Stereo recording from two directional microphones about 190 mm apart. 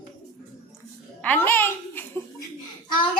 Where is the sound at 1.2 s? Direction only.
10° left (ahead or behind).